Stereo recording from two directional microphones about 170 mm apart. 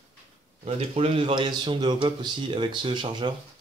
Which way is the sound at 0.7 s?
35° right (ahead or behind).